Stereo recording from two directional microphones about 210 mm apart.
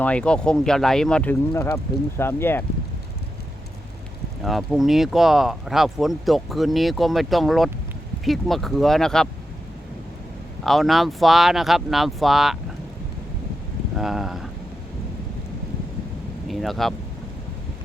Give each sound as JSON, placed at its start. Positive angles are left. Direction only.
{"t": 0.0, "sound": "speech", "side_deg": 5}
{"t": 4.4, "sound": "speech", "side_deg": 0}
{"t": 10.6, "sound": "speech", "side_deg": 0}
{"t": 13.9, "sound": "speech", "side_deg": 0}
{"t": 16.5, "sound": "speech", "side_deg": 0}